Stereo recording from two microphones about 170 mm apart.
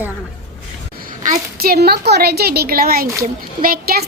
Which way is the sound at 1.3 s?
60° right (ahead or behind).